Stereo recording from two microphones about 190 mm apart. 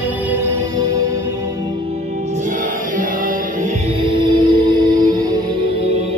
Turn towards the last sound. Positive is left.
turn(degrees=-20)  # may be behind; listen again after turning